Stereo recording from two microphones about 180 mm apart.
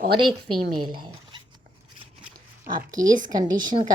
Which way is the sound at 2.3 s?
50° right (ahead or behind).